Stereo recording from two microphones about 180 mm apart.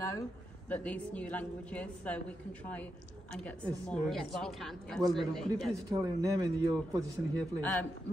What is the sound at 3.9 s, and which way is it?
Speech, centre (ahead or behind).